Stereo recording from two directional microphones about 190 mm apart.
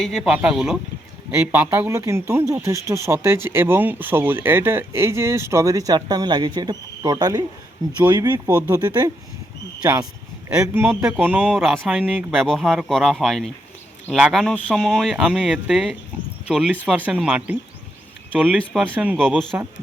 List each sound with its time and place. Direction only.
0.0 s speech: centre (ahead or behind); by 9.1 s 20° right (ahead or behind)
10.5 s speech: 5° right (ahead or behind)
18.5 s speech: centre (ahead or behind)